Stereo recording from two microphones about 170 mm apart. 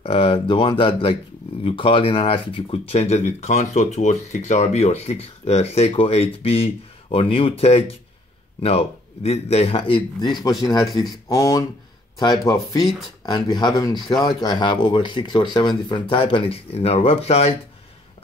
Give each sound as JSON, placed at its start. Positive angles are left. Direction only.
{"t": 0.0, "sound": "speech", "side_deg": 35}